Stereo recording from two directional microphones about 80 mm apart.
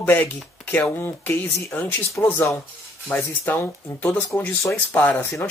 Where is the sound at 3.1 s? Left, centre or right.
Left.